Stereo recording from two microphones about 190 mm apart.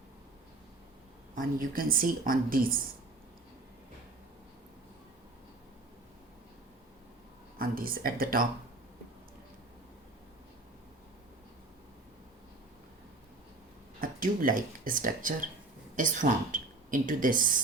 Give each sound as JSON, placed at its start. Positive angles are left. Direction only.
{"t": 1.4, "sound": "speech", "side_deg": -50}
{"t": 7.6, "sound": "speech", "side_deg": -50}
{"t": 14.0, "sound": "speech", "side_deg": -45}